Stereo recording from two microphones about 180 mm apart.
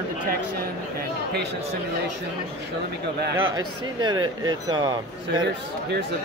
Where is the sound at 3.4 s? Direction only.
25° right (ahead or behind).